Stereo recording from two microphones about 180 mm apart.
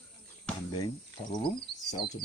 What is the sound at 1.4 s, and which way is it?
Speech, 25° left (ahead or behind).